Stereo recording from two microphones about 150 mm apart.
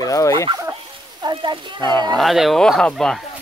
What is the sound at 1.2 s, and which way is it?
Speech, 30° right (ahead or behind).